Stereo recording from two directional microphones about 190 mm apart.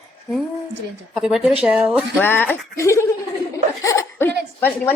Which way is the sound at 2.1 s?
10° left (ahead or behind).